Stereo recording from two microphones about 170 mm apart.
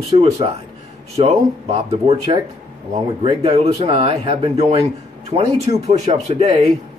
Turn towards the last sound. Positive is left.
turn(degrees=-40)  # may be behind; listen again after turning